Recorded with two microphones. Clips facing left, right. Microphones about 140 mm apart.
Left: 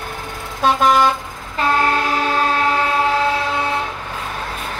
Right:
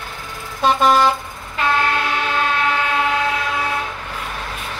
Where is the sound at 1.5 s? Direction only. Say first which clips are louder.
Left 2 dB; 35° left (ahead or behind).